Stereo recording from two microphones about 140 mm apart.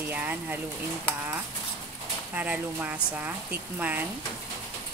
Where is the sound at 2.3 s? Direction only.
10° right (ahead or behind).